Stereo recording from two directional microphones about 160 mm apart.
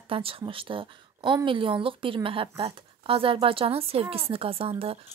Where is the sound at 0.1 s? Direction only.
35° right (ahead or behind).